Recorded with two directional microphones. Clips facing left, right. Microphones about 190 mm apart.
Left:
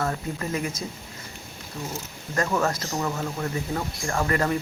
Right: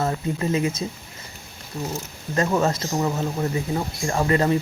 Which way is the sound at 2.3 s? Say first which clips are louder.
Right 3 dB; 20° right (ahead or behind).